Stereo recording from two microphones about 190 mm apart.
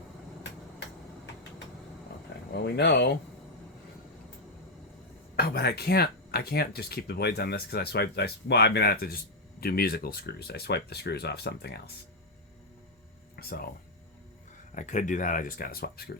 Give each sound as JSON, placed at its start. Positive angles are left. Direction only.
{"t": 2.6, "sound": "speech", "side_deg": 60}
{"t": 5.4, "sound": "speech", "side_deg": 55}
{"t": 13.3, "sound": "speech", "side_deg": 55}
{"t": 14.8, "sound": "speech", "side_deg": 40}